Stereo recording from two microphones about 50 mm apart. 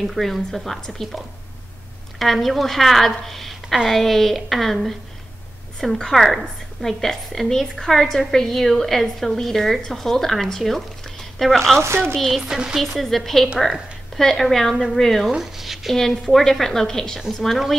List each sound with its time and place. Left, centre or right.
0.0 s a woman's voice: centre
2.1 s a woman's voice: centre
5.9 s a woman's voice: centre
11.8 s speech: right
12.4 s speech: centre
12.8 s a woman's voice: centre
15.3 s a woman's voice: centre